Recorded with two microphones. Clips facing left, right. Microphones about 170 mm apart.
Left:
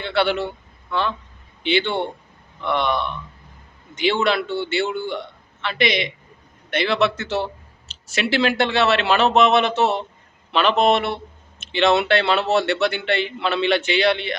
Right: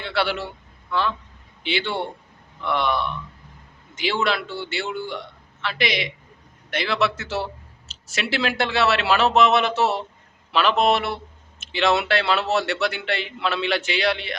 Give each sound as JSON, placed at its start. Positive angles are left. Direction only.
{"t": 0.0, "sound": "a man's voice", "side_deg": 0}